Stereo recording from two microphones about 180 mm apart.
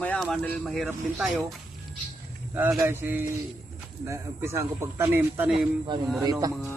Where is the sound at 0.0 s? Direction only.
5° left (ahead or behind).